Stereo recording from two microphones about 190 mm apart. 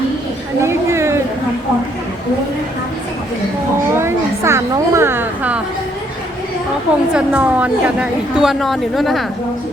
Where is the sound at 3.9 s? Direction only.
15° right (ahead or behind).